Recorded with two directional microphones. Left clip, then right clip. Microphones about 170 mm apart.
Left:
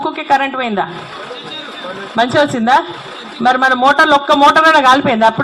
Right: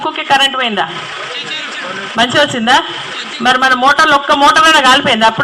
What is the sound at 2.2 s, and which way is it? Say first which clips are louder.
Speech: right 1 dB; 45° left (ahead or behind).